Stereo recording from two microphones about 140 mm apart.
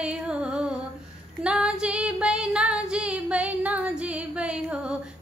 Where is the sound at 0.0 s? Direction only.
10° right (ahead or behind).